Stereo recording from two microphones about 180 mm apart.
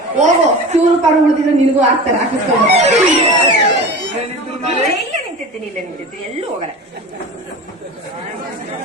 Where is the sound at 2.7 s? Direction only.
40° right (ahead or behind).